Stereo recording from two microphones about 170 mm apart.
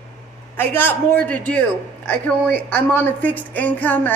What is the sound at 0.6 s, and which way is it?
A woman's voice, 10° left (ahead or behind).